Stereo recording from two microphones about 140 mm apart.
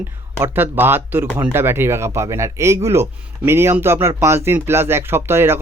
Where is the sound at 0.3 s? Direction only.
15° right (ahead or behind).